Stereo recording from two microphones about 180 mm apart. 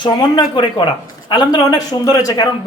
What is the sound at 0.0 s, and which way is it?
A man's voice, 25° left (ahead or behind).